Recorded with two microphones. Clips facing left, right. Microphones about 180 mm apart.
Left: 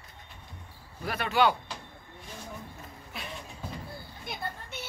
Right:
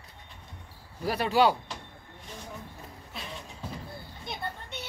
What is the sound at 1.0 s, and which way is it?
Speech, 35° right (ahead or behind).